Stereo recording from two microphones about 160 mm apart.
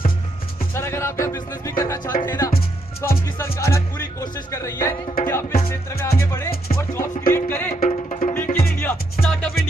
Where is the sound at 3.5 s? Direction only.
15° left (ahead or behind).